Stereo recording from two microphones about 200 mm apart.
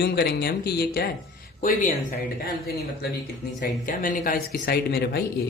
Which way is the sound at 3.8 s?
40° left (ahead or behind).